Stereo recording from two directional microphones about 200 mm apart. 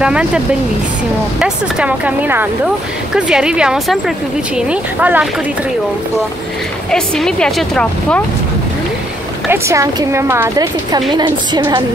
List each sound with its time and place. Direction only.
0.0 s speech: 5° right (ahead or behind)
1.4 s a woman's voice: 5° right (ahead or behind)
6.9 s speech: 5° left (ahead or behind)
9.5 s a woman's voice: 15° right (ahead or behind)